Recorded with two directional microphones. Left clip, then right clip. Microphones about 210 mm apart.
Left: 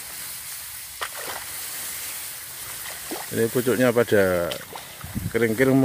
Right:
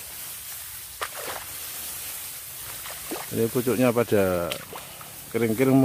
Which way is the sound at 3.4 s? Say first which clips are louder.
Left 2 dB; centre (ahead or behind).